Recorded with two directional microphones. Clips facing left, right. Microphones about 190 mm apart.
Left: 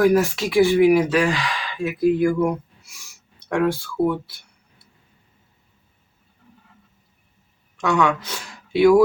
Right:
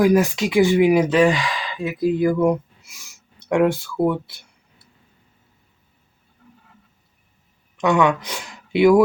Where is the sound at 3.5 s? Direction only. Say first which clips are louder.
Right 3 dB; 20° right (ahead or behind).